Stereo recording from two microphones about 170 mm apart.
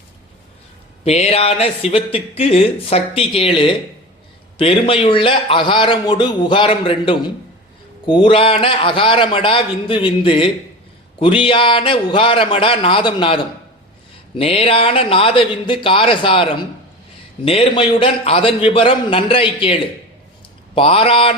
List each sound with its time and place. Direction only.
1.0 s a man's voice: 35° left (ahead or behind)